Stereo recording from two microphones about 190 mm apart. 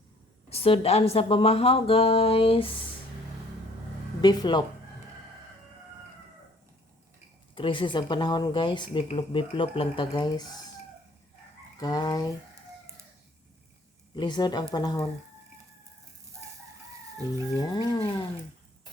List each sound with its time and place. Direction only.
0.5 s speech: 30° left (ahead or behind)
4.2 s speech: 20° left (ahead or behind)
7.5 s speech: 25° left (ahead or behind)
11.8 s speech: 20° left (ahead or behind)
14.2 s speech: 20° left (ahead or behind)
17.5 s speech: 20° left (ahead or behind)